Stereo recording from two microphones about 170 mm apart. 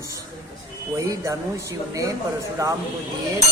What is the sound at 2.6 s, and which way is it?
Speech, 20° right (ahead or behind).